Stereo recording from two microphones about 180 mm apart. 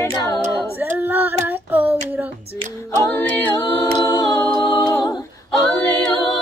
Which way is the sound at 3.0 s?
10° left (ahead or behind).